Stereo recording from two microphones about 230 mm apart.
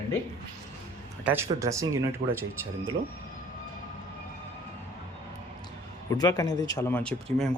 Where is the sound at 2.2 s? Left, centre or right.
Right.